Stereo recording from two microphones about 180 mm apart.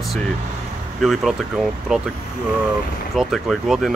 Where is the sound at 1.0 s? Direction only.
Centre (ahead or behind).